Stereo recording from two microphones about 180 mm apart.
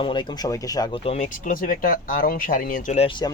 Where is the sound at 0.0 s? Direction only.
25° left (ahead or behind).